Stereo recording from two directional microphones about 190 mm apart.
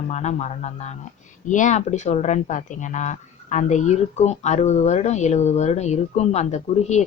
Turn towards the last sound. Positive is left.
turn(degrees=35)  # may be behind; listen again after turning